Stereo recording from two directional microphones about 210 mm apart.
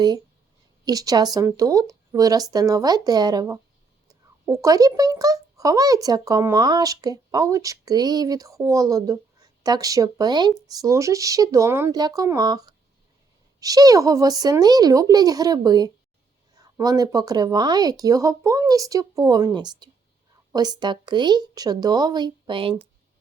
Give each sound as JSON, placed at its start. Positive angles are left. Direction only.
{"t": 0.9, "sound": "a child's voice", "side_deg": -15}